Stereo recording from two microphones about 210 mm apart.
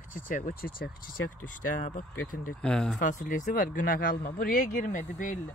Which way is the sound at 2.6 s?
5° left (ahead or behind).